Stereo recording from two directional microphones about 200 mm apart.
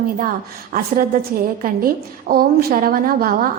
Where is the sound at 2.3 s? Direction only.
50° right (ahead or behind).